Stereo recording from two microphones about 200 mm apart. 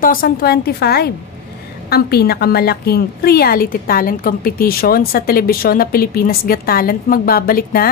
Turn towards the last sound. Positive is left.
turn(degrees=50)  # may be behind; listen again after turning